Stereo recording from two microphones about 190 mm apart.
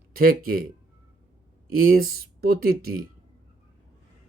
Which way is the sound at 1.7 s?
50° right (ahead or behind).